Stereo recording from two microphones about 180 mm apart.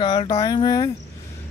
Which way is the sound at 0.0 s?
25° left (ahead or behind).